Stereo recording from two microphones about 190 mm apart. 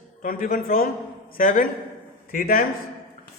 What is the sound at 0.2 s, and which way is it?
A man's voice, 45° left (ahead or behind).